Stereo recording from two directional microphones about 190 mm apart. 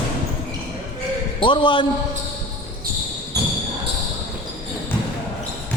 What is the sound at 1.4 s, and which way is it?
Speech, 25° left (ahead or behind).